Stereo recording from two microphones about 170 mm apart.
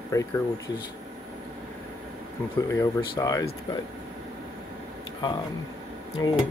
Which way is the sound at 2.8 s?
20° left (ahead or behind).